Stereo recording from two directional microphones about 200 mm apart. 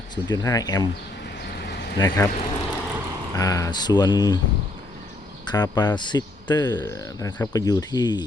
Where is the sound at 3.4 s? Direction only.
15° left (ahead or behind).